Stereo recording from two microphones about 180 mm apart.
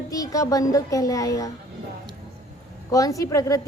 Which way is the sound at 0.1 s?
20° left (ahead or behind).